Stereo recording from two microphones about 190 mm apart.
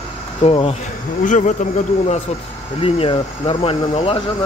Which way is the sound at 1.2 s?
40° left (ahead or behind).